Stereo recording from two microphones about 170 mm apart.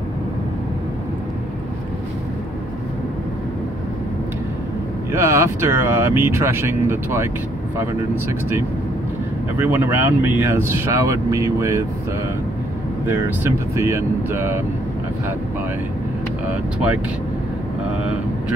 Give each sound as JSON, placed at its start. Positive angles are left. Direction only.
{"t": 5.1, "sound": "speech", "side_deg": -15}
{"t": 8.3, "sound": "speech", "side_deg": -15}
{"t": 13.0, "sound": "speech", "side_deg": -15}